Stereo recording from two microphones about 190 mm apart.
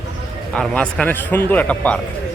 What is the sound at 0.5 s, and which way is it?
Speech, 5° left (ahead or behind).